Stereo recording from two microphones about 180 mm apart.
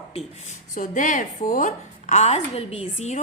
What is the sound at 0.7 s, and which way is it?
A woman's voice, 45° left (ahead or behind).